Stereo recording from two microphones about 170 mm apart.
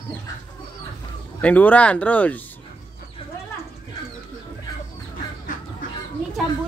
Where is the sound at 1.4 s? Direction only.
10° left (ahead or behind).